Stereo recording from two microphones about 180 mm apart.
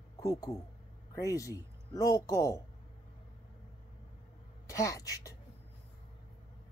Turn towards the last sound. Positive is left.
turn(degrees=20)  # may be behind; listen again after turning